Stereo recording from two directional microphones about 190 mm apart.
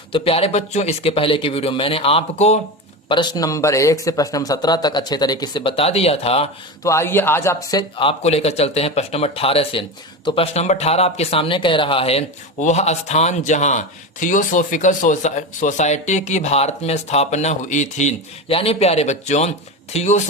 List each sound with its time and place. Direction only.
0.1 s speech: 30° left (ahead or behind)
6.8 s speech: 15° left (ahead or behind); by 20.2 s 35° left (ahead or behind)